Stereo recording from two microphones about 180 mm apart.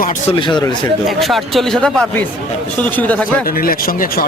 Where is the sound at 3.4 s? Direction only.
55° left (ahead or behind).